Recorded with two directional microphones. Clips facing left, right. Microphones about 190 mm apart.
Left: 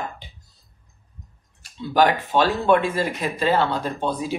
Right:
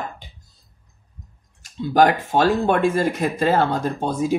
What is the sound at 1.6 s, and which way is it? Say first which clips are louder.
Speech: right 3 dB; 45° right (ahead or behind).